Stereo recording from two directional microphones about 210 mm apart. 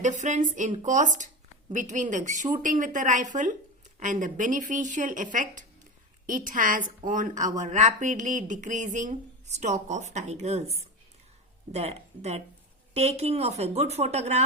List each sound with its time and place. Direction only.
0.0 s speech: 35° right (ahead or behind)
11.7 s speech: 30° right (ahead or behind)